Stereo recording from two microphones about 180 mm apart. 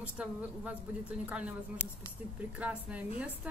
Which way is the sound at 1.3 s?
5° right (ahead or behind).